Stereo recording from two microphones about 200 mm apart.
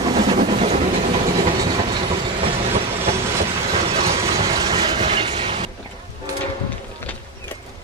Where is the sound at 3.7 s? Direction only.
30° right (ahead or behind).